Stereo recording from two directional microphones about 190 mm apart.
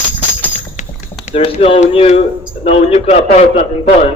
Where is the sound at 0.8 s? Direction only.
40° left (ahead or behind).